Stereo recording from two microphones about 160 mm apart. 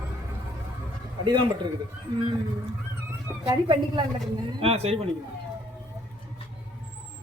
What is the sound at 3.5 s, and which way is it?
Speech, 30° right (ahead or behind).